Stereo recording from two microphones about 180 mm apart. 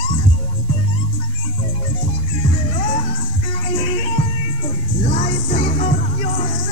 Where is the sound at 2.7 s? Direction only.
35° left (ahead or behind).